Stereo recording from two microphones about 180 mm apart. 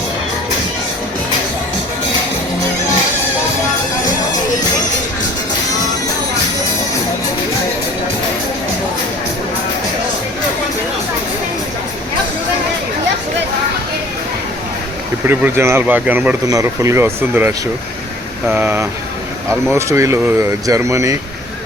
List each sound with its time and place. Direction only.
15.3 s speech: 10° right (ahead or behind)